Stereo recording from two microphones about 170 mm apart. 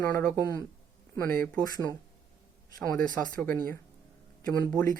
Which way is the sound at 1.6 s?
20° left (ahead or behind).